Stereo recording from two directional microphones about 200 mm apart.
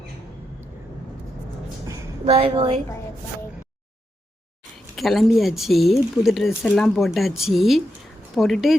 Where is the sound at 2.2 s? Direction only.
30° right (ahead or behind).